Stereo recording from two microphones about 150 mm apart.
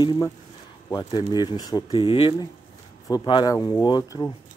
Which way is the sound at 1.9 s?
35° left (ahead or behind).